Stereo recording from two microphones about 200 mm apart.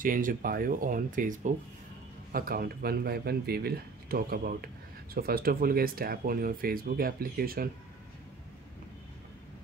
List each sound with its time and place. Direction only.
0.0 s speech: 45° right (ahead or behind)